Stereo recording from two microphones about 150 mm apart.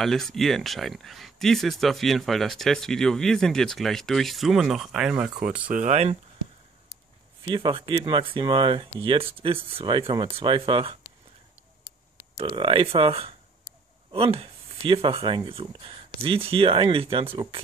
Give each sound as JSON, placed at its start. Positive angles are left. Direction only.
{"t": 0.0, "sound": "speech", "side_deg": 0}
{"t": 5.7, "sound": "speech", "side_deg": -55}
{"t": 7.4, "sound": "speech", "side_deg": -30}
{"t": 12.4, "sound": "speech", "side_deg": -35}